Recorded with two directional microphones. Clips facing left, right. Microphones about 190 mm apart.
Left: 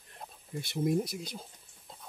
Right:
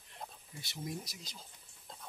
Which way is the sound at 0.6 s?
55° left (ahead or behind).